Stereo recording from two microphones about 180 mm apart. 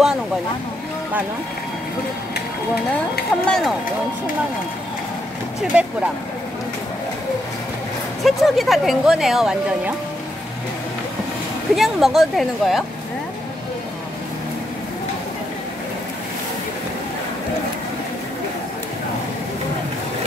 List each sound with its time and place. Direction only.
3.4 s speech: centre (ahead or behind)
5.7 s speech: 5° right (ahead or behind)
8.2 s speech: centre (ahead or behind)
11.7 s speech: centre (ahead or behind)